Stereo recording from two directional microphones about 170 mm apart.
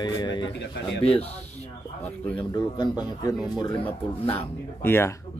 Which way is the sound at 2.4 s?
25° left (ahead or behind).